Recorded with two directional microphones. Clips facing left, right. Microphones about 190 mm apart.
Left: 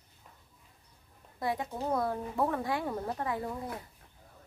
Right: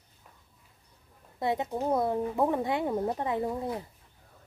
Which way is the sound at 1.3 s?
25° right (ahead or behind).